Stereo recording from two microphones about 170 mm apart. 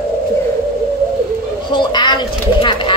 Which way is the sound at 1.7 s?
25° left (ahead or behind).